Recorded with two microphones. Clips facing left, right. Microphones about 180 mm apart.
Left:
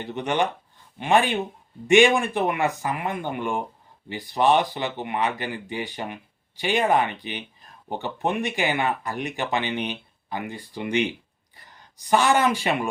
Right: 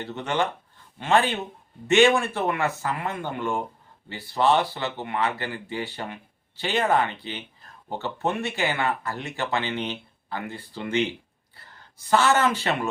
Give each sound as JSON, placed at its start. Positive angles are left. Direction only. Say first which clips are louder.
{"t": 0.0, "sound": "speech", "louder": "left 2 dB", "side_deg": 15}